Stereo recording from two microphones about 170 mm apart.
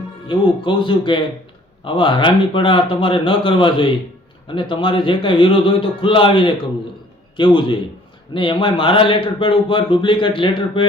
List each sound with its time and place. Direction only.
0.3 s speech: 30° left (ahead or behind)